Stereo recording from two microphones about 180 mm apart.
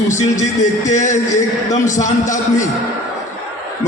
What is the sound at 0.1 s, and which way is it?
A man's voice, 45° left (ahead or behind).